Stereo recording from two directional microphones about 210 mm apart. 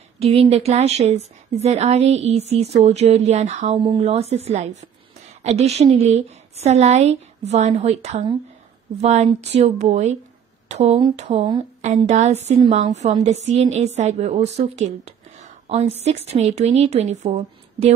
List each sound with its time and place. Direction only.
0.2 s a woman's voice: 30° right (ahead or behind)